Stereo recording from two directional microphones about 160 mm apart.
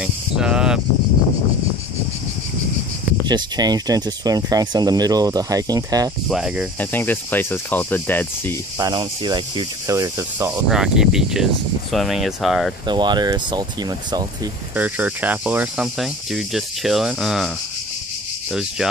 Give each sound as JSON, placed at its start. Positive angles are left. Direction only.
{"t": 0.0, "sound": "cricket", "side_deg": -5}
{"t": 3.3, "sound": "speech", "side_deg": -25}
{"t": 6.2, "sound": "speech", "side_deg": -5}
{"t": 6.8, "sound": "cricket", "side_deg": 10}
{"t": 8.7, "sound": "speech", "side_deg": -25}
{"t": 10.7, "sound": "speech", "side_deg": -5}
{"t": 12.8, "sound": "speech", "side_deg": -25}
{"t": 14.8, "sound": "speech", "side_deg": -10}
{"t": 18.5, "sound": "speech", "side_deg": 0}